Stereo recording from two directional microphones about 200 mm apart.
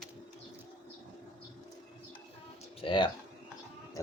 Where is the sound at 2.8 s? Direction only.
25° left (ahead or behind).